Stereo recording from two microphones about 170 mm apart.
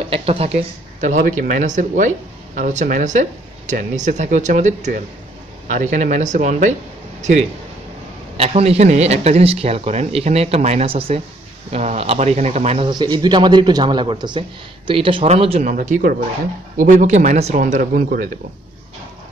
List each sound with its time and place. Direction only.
0.1 s speech: 35° right (ahead or behind)
12.9 s speech: 25° right (ahead or behind)
15.6 s speech: 45° right (ahead or behind)